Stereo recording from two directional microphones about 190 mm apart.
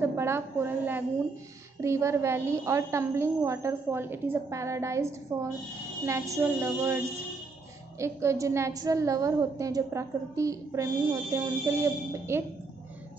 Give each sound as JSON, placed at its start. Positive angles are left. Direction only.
{"t": 0.0, "sound": "a woman's voice", "side_deg": -15}
{"t": 8.0, "sound": "a woman's voice", "side_deg": -15}